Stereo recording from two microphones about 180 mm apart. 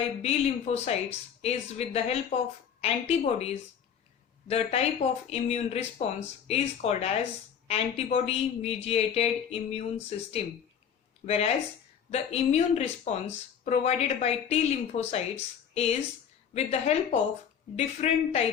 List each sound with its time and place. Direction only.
0.2 s speech: 35° left (ahead or behind)